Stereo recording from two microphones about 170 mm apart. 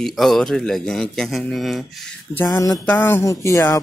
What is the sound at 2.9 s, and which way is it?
Speech, 10° left (ahead or behind).